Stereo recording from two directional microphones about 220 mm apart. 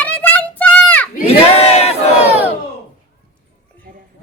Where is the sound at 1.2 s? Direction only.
30° left (ahead or behind).